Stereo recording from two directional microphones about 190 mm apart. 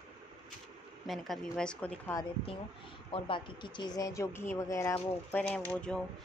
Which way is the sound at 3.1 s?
25° left (ahead or behind).